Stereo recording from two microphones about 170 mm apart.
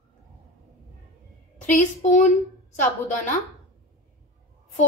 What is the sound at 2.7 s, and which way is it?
Speech, 50° left (ahead or behind).